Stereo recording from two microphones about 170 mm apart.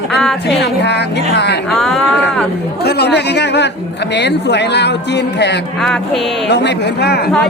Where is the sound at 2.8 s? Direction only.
70° left (ahead or behind); by 5.6 s 90° left.